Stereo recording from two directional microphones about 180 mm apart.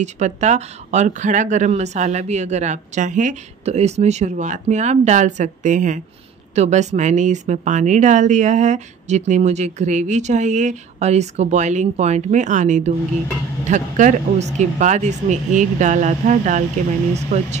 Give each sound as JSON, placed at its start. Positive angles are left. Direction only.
{"t": 0.0, "sound": "speech", "side_deg": -40}